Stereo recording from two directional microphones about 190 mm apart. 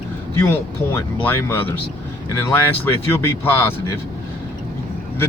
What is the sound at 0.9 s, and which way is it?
Speech, 10° left (ahead or behind).